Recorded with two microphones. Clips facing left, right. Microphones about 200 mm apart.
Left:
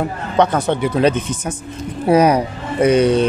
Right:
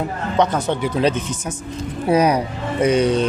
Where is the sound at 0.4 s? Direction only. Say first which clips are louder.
Left 3 dB; 60° left (ahead or behind).